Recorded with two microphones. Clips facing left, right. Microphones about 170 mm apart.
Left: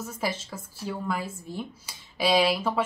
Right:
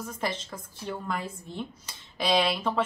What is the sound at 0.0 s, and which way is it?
A woman's voice, 5° left (ahead or behind).